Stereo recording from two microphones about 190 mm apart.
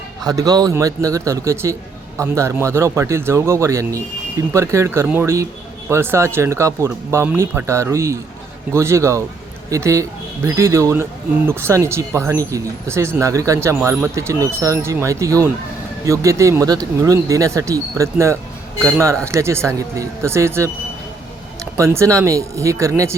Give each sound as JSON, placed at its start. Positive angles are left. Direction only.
{"t": 0.3, "sound": "speech", "side_deg": -20}